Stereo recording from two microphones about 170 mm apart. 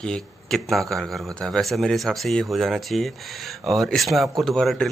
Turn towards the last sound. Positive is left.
turn(degrees=5)  # may be behind; listen again after turning